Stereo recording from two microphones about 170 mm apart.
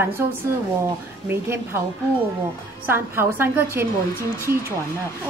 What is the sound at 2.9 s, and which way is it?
A woman's voice, 15° right (ahead or behind).